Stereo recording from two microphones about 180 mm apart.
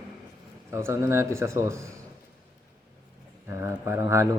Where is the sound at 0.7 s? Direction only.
15° right (ahead or behind).